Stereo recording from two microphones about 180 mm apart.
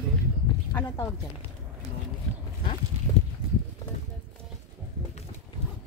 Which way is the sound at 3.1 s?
20° left (ahead or behind).